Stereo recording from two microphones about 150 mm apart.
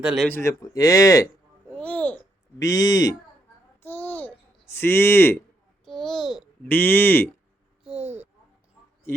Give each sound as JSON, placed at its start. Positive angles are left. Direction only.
{"t": 0.0, "sound": "speech", "side_deg": -5}
{"t": 0.3, "sound": "speech", "side_deg": 15}
{"t": 1.7, "sound": "a child's voice", "side_deg": 10}
{"t": 2.6, "sound": "speech", "side_deg": 25}
{"t": 3.8, "sound": "babbling", "side_deg": 15}
{"t": 5.8, "sound": "a child's voice", "side_deg": 0}
{"t": 6.7, "sound": "speech", "side_deg": 10}
{"t": 8.0, "sound": "a child's voice", "side_deg": -50}